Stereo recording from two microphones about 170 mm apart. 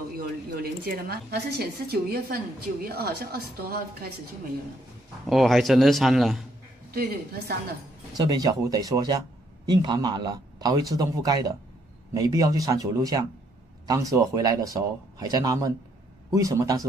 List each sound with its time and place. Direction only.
0.6 s a woman's voice: 65° right (ahead or behind)
5.2 s a man's voice: centre (ahead or behind)
6.9 s speech: 65° right (ahead or behind)
8.2 s a man's voice: 25° right (ahead or behind)